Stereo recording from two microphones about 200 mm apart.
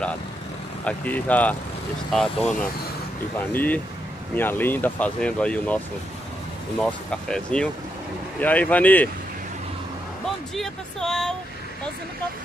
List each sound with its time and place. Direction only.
0.8 s speech: 10° left (ahead or behind)
6.8 s speech: 5° left (ahead or behind)
10.2 s speech: centre (ahead or behind)